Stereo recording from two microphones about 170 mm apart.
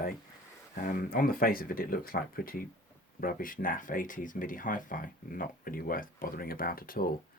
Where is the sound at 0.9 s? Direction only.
60° left (ahead or behind).